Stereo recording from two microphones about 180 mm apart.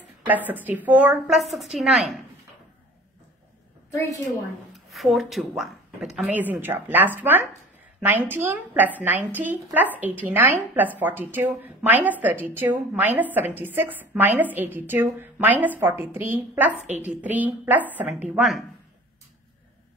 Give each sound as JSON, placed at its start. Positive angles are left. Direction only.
{"t": 0.3, "sound": "a woman's voice", "side_deg": -10}
{"t": 4.7, "sound": "a woman's voice", "side_deg": 0}